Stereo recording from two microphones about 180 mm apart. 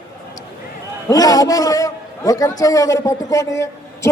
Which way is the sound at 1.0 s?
20° left (ahead or behind).